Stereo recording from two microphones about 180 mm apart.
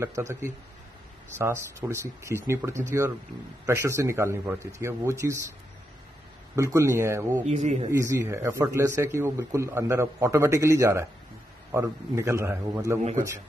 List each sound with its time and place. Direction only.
0.0 s speech: 15° right (ahead or behind)
6.5 s speech: 15° right (ahead or behind)
7.4 s a man's voice: 40° right (ahead or behind)
7.9 s speech: 15° right (ahead or behind)